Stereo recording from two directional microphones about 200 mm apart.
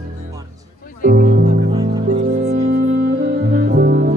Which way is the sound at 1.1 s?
45° right (ahead or behind).